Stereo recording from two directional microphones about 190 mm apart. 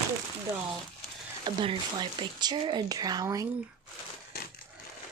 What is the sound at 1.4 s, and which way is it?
Speech, 25° right (ahead or behind).